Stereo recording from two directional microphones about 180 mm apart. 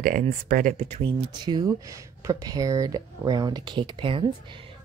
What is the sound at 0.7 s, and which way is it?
Speech, 35° right (ahead or behind).